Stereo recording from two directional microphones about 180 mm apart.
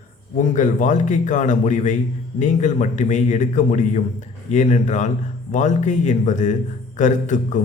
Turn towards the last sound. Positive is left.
turn(degrees=45)  # may be behind; listen again after turning